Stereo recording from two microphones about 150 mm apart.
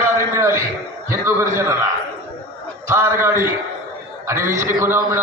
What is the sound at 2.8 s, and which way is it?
A man's voice, 20° right (ahead or behind).